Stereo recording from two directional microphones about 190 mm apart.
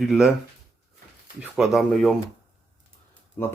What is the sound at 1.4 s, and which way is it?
Speech, 5° right (ahead or behind).